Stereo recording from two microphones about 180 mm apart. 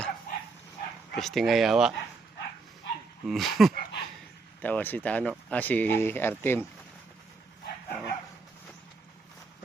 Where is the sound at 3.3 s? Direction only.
Centre (ahead or behind).